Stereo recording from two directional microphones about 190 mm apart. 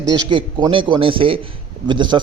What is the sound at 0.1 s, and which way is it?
A man's voice, 25° right (ahead or behind).